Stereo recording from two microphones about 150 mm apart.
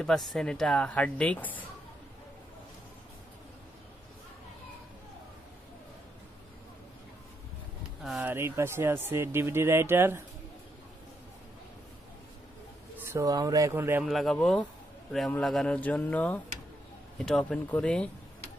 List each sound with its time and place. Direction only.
0.0 s speech: centre (ahead or behind)
8.0 s a sound: centre (ahead or behind)
8.3 s speech: 15° right (ahead or behind)
13.0 s speech: 20° right (ahead or behind)
14.0 s speech: centre (ahead or behind)